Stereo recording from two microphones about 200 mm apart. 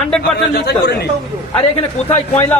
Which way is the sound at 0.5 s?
55° left (ahead or behind).